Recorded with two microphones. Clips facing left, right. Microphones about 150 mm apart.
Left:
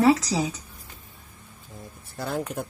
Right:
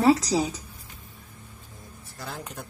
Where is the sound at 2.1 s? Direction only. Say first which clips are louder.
Left 8 dB; 55° left (ahead or behind).